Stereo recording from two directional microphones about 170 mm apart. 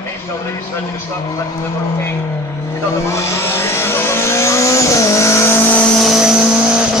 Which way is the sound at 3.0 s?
15° left (ahead or behind).